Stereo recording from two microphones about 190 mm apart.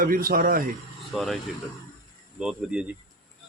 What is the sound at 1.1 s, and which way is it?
Speech, centre (ahead or behind).